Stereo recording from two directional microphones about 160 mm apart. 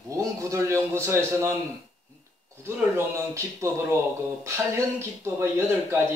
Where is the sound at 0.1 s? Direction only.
20° right (ahead or behind).